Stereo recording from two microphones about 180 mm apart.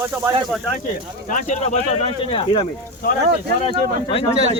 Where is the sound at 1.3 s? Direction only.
45° left (ahead or behind).